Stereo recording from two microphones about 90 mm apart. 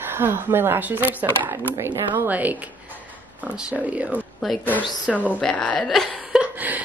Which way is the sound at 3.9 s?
15° right (ahead or behind).